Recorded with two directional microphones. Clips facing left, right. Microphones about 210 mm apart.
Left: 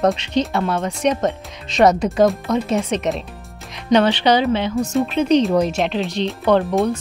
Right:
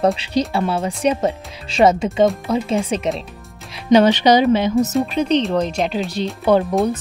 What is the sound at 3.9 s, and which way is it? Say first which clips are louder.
Speech: right 3 dB; 10° right (ahead or behind).